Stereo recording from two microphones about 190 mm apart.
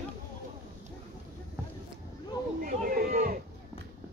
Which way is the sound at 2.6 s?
50° right (ahead or behind).